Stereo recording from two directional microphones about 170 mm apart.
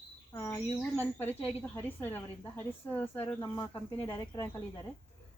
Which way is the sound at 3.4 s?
20° left (ahead or behind).